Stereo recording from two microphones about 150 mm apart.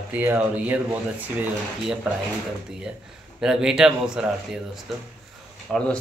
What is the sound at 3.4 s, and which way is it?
A man's voice, 5° right (ahead or behind).